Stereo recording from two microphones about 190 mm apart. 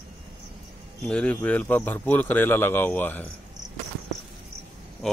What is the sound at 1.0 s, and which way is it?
Speech, 5° left (ahead or behind).